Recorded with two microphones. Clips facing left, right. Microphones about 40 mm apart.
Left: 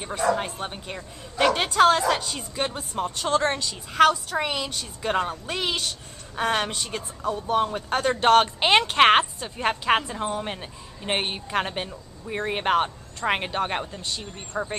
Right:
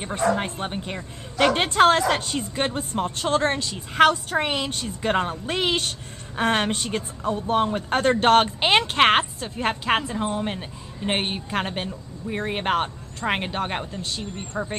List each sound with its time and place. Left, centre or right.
0.1 s a woman's voice: right
0.4 s a woman's voice: centre
8.1 s a woman's voice: centre